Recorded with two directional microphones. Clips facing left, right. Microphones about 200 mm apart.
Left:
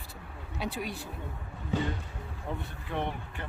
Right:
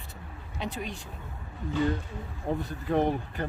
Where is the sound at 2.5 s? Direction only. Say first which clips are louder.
Right 9 dB; 40° right (ahead or behind).